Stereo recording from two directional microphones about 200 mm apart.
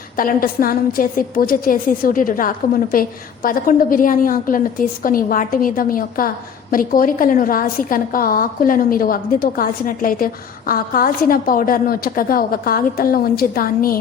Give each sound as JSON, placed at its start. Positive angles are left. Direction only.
{"t": 0.2, "sound": "a woman's voice", "side_deg": 45}